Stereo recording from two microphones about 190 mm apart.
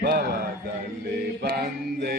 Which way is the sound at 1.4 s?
55° right (ahead or behind).